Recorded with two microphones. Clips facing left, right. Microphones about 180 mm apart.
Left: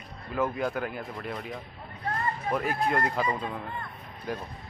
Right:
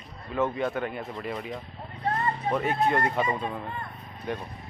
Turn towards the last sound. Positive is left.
turn(degrees=0)  # may be behind; listen again after turning